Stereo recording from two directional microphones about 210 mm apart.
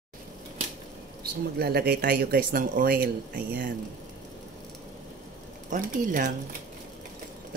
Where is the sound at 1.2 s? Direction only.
50° right (ahead or behind).